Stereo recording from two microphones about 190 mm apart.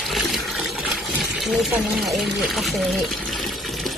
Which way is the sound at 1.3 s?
Centre (ahead or behind).